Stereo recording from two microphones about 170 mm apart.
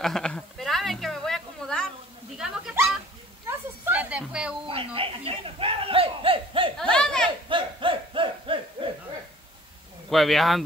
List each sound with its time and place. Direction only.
0.0 s a sound: 5° left (ahead or behind)
4.6 s speech: 35° right (ahead or behind)
6.8 s speech: 5° left (ahead or behind)
7.4 s battle cry: 30° right (ahead or behind)
10.0 s speech: centre (ahead or behind)